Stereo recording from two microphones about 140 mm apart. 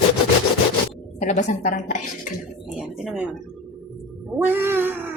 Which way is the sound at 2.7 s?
Centre (ahead or behind).